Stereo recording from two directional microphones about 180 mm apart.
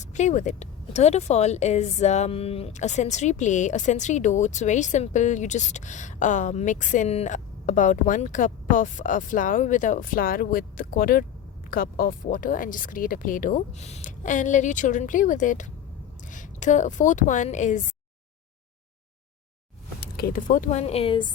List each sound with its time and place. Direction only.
0.0 s a woman's voice: 40° left (ahead or behind)
20.0 s speech: 60° left (ahead or behind); by 21.3 s 25° left (ahead or behind)